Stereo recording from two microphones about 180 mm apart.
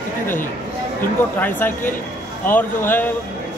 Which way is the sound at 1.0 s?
10° left (ahead or behind).